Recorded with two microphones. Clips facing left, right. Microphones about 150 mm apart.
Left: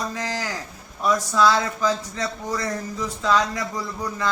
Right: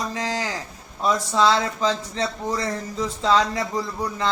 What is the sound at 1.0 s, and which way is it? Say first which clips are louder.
A man's voice: even; 25° right (ahead or behind).